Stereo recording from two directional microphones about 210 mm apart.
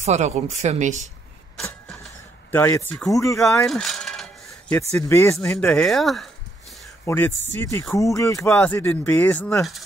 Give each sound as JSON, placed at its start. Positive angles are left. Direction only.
{"t": 0.0, "sound": "speech", "side_deg": -35}
{"t": 2.5, "sound": "speech", "side_deg": 10}
{"t": 3.3, "sound": "a sound", "side_deg": 0}
{"t": 4.9, "sound": "speech", "side_deg": 15}